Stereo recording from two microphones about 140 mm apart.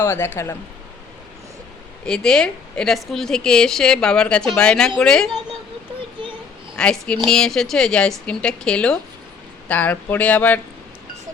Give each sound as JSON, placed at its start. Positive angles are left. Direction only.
{"t": 0.0, "sound": "speech", "side_deg": 15}
{"t": 2.0, "sound": "speech", "side_deg": 5}
{"t": 6.7, "sound": "speech", "side_deg": 5}